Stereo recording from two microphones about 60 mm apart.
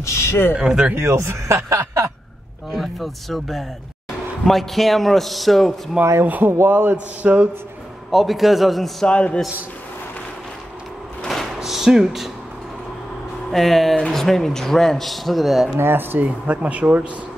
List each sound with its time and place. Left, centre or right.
0.0 s a sound: left
0.6 s speech: centre
1.1 s speech: right
2.7 s speech: centre
6.2 s speech: right
8.1 s speech: centre
9.0 s a man's voice: centre
11.2 s drawer open or close: centre
13.5 s speech: centre
15.8 s speech: right